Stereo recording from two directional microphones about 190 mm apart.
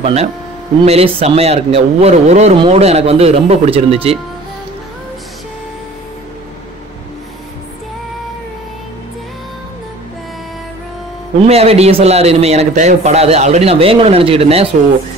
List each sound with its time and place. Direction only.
0.0 s a man's voice: 35° right (ahead or behind)
11.4 s a man's voice: 35° right (ahead or behind)